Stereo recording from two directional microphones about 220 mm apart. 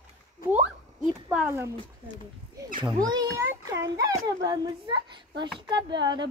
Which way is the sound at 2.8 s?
20° right (ahead or behind).